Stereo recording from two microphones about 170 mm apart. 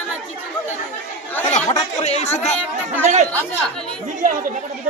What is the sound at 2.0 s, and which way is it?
Speech, 40° left (ahead or behind).